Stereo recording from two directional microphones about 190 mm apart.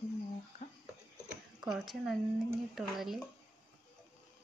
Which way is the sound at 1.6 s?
Centre (ahead or behind).